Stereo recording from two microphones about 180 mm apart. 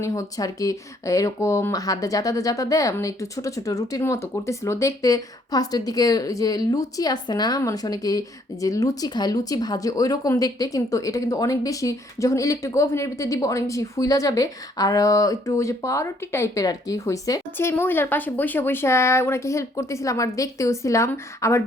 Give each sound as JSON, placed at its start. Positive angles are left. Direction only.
{"t": 0.0, "sound": "speech", "side_deg": 20}